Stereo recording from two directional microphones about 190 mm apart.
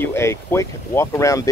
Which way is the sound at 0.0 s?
15° left (ahead or behind).